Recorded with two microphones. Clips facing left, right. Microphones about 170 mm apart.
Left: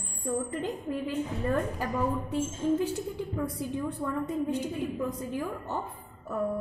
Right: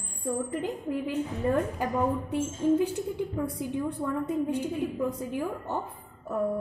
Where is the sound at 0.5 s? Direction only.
10° right (ahead or behind).